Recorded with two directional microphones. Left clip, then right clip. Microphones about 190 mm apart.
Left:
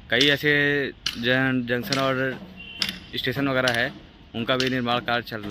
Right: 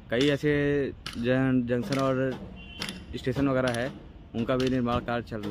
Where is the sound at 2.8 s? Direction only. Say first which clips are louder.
Left 9 dB; 60° right (ahead or behind).